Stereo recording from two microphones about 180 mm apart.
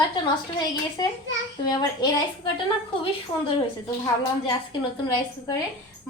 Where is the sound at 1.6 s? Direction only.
25° left (ahead or behind).